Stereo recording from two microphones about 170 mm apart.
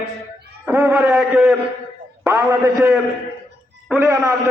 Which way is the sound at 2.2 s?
15° right (ahead or behind).